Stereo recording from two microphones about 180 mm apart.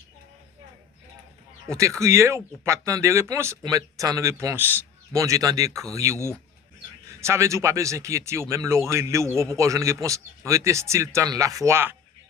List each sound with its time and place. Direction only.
1.6 s speech: 15° right (ahead or behind)